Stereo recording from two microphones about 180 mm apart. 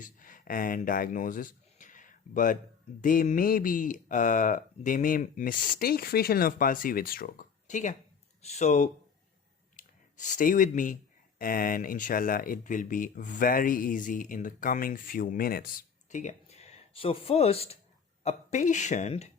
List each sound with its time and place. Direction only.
0.0 s a man's voice: 50° left (ahead or behind)
16.0 s speech: 40° left (ahead or behind)